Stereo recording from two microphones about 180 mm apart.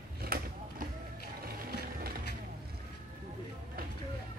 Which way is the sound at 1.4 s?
55° right (ahead or behind).